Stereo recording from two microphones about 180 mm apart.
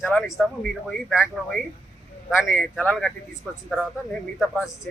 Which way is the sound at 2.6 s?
10° left (ahead or behind).